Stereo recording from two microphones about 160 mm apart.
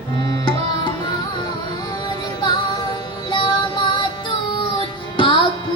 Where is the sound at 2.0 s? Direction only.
30° left (ahead or behind).